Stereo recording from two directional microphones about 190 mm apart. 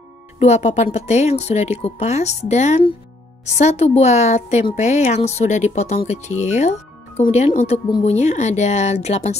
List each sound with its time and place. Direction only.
0.4 s speech: 35° left (ahead or behind)